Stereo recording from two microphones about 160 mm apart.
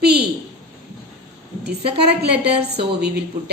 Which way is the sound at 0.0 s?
90° right.